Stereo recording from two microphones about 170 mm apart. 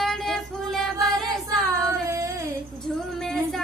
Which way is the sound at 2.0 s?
15° right (ahead or behind).